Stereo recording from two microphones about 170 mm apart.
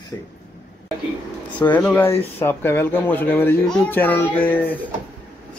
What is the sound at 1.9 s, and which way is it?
Speech, 10° left (ahead or behind).